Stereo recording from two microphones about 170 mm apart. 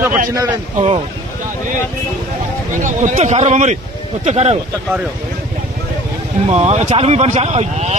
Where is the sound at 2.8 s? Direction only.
45° right (ahead or behind).